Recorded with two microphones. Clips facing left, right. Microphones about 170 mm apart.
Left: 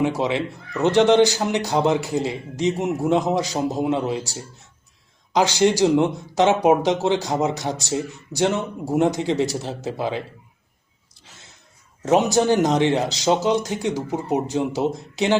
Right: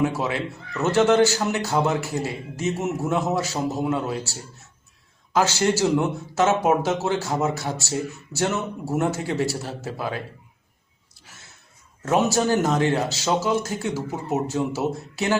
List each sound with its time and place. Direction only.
0.0 s a man's voice: 20° left (ahead or behind)
12.0 s a man's voice: 20° left (ahead or behind)